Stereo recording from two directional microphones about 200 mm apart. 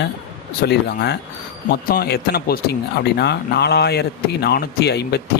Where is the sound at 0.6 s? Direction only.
55° left (ahead or behind).